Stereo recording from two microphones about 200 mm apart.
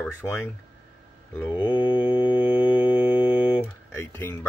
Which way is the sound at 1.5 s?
20° left (ahead or behind).